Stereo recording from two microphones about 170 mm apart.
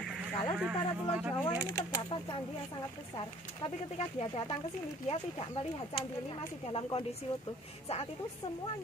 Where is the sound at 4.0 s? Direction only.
35° left (ahead or behind).